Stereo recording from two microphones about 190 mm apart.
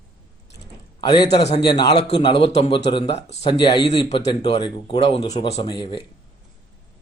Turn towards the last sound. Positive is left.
turn(degrees=25)  # may be behind; listen again after turning